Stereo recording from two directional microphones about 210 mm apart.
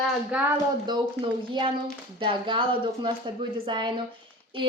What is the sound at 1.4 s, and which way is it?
A child's voice, 25° right (ahead or behind).